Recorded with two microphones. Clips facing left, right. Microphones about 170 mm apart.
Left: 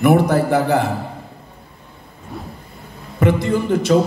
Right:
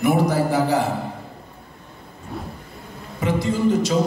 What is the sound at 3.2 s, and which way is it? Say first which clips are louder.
Speech: left 3 dB; 60° left (ahead or behind).